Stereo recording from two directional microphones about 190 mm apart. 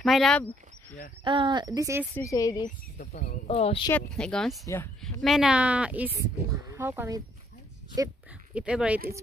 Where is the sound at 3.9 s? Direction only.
5° left (ahead or behind).